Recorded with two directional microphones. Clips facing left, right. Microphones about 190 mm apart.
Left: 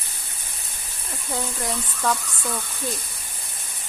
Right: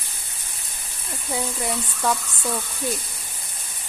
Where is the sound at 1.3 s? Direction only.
10° right (ahead or behind).